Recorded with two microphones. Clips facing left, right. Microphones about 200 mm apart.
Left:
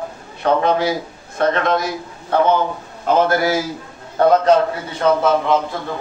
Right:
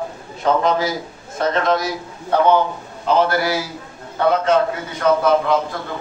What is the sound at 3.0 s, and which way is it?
A man's voice, 50° left (ahead or behind).